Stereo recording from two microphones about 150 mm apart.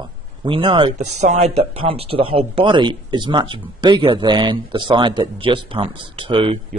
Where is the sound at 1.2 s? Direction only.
50° right (ahead or behind).